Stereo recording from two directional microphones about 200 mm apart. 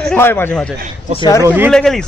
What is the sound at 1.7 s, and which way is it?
Speech, 5° left (ahead or behind).